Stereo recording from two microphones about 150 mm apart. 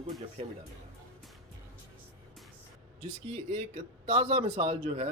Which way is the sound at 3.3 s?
45° right (ahead or behind).